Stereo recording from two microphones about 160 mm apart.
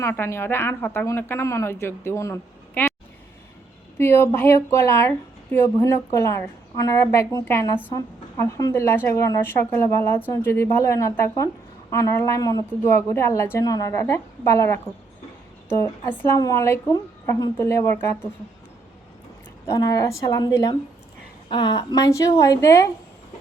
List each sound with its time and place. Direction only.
0.0 s a woman's voice: 15° left (ahead or behind)
3.9 s a woman's voice: 15° left (ahead or behind)
15.8 s a woman's voice: 15° left (ahead or behind)
19.6 s a woman's voice: 20° left (ahead or behind)